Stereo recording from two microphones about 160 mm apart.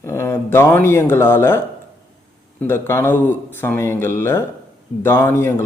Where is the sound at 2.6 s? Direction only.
15° left (ahead or behind).